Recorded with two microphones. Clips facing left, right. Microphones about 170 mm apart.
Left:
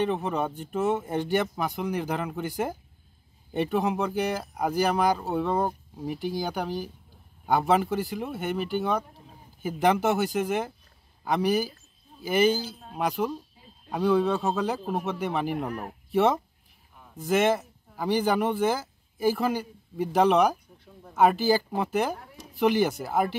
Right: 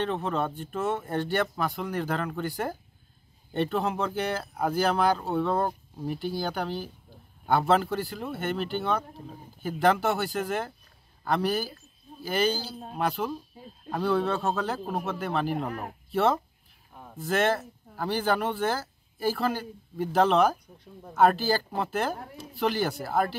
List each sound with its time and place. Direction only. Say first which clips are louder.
0.0 s speech: left 2 dB; 15° left (ahead or behind)
13.8 s speech: left 3 dB; 10° left (ahead or behind)